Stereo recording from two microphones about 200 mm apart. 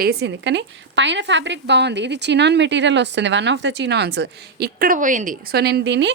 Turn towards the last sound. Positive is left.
turn(degrees=-60)  # may be behind; listen again after turning